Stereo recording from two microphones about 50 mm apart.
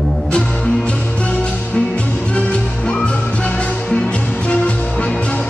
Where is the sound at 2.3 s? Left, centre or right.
Left.